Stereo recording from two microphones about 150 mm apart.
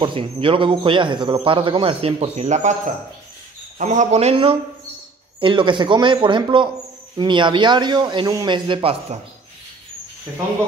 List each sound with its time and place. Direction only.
0.0 s speech: 35° right (ahead or behind)